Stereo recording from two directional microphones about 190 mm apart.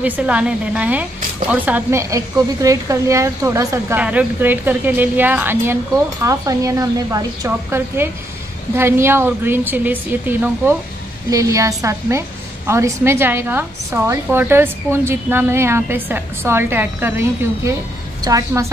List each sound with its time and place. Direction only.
0.0 s a woman's voice: 5° right (ahead or behind)